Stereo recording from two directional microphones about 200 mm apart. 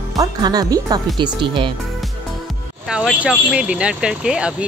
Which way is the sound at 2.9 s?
5° right (ahead or behind).